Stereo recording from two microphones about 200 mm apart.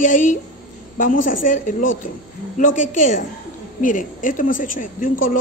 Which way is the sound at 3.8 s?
40° left (ahead or behind).